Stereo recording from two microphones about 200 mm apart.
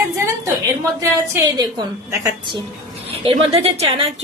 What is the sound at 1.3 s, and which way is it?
A woman's voice, 20° right (ahead or behind).